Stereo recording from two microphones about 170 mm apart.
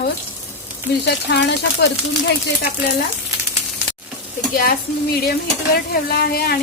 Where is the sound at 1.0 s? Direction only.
85° left.